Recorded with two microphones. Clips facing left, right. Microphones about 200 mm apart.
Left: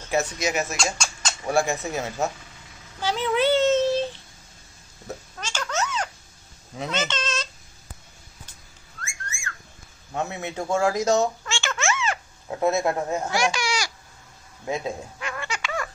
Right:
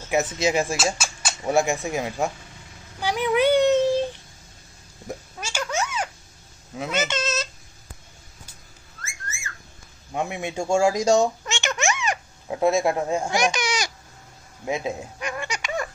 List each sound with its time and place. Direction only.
0.0 s dishes: 15° right (ahead or behind)
0.4 s speech: 30° right (ahead or behind)
0.9 s a sound: 5° right (ahead or behind)
1.4 s speech: 20° right (ahead or behind)
3.0 s a sound: 15° right (ahead or behind)
6.8 s speech: 10° right (ahead or behind)
9.0 s whistling: 5° right (ahead or behind)
10.1 s speech: 15° right (ahead or behind)
14.6 s babbling: 15° right (ahead or behind)